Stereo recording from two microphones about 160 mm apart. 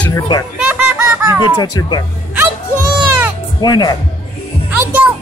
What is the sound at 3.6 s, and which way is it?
Speech, 25° left (ahead or behind).